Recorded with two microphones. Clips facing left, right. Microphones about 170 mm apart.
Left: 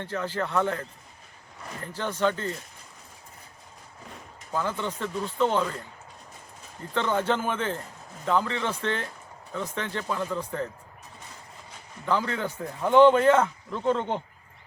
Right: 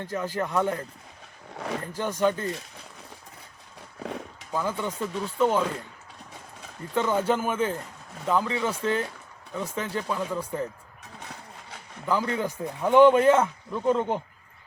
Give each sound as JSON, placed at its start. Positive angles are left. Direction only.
{"t": 0.0, "sound": "speech", "side_deg": -10}
{"t": 1.5, "sound": "speech", "side_deg": -85}
{"t": 1.9, "sound": "speech", "side_deg": -15}
{"t": 4.0, "sound": "a sound", "side_deg": -80}
{"t": 4.5, "sound": "speech", "side_deg": -10}
{"t": 6.9, "sound": "speech", "side_deg": -10}
{"t": 12.0, "sound": "speech", "side_deg": -10}